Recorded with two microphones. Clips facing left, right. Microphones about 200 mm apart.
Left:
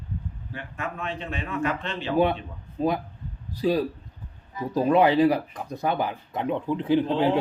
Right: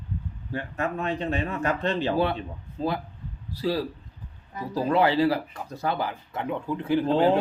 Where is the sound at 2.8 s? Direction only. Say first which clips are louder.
Left 3 dB; 15° left (ahead or behind).